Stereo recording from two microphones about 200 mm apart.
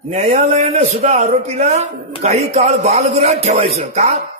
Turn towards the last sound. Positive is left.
turn(degrees=-35)  # may be behind; listen again after turning